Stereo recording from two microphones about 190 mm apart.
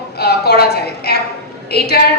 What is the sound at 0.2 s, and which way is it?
A woman's voice, 60° left (ahead or behind).